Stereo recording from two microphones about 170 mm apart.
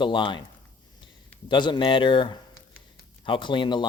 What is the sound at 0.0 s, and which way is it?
Speech, 30° left (ahead or behind).